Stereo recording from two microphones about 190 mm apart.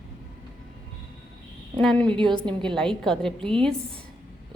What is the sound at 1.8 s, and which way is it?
Speech, 5° left (ahead or behind).